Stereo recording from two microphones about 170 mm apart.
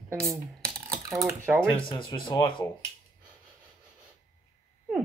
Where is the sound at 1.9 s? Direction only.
30° left (ahead or behind).